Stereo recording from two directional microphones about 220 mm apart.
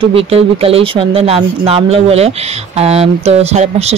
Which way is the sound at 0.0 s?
25° right (ahead or behind).